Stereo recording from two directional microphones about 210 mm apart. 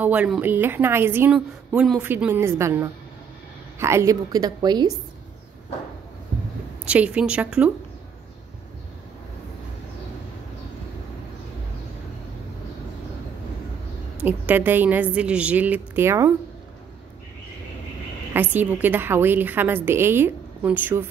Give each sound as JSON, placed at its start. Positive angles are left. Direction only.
{"t": 0.0, "sound": "a woman's voice", "side_deg": -5}
{"t": 6.9, "sound": "a woman's voice", "side_deg": -5}
{"t": 14.2, "sound": "a woman's voice", "side_deg": -10}
{"t": 18.3, "sound": "a woman's voice", "side_deg": -10}